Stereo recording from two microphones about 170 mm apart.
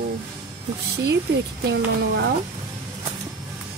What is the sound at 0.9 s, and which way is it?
Speech, 75° right (ahead or behind).